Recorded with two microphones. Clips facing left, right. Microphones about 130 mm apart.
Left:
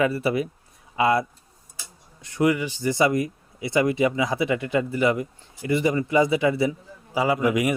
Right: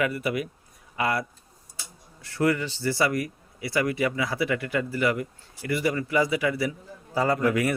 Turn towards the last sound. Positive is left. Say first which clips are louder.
# left 2 dB
turn(degrees=15)  # may be behind; listen again after turning